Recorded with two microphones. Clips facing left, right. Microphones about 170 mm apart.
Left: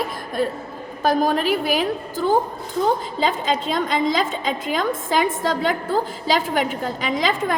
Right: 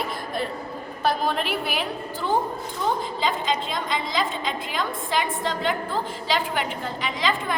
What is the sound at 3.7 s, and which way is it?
A woman's voice, 45° left (ahead or behind).